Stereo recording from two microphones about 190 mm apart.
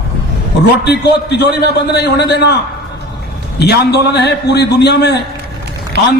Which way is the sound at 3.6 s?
60° left (ahead or behind).